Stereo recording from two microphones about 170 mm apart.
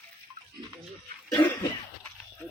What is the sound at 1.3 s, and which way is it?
Cough, 20° left (ahead or behind).